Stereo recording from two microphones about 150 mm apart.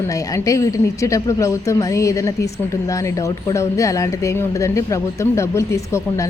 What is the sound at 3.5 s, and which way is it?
Speech, 20° left (ahead or behind).